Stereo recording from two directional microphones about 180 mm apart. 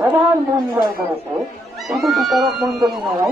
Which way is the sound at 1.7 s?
Centre (ahead or behind).